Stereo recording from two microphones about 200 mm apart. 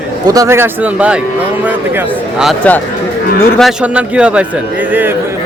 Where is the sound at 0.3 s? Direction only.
15° right (ahead or behind).